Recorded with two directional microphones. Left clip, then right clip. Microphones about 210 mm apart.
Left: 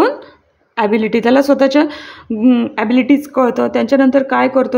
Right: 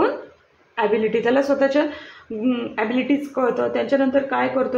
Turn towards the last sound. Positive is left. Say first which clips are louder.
# left 8 dB
turn(degrees=50)  # may be behind; listen again after turning